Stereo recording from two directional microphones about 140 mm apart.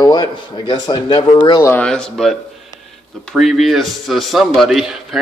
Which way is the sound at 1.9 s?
5° left (ahead or behind).